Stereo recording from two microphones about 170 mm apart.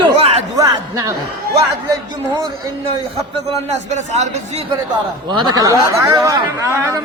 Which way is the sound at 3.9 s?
40° right (ahead or behind).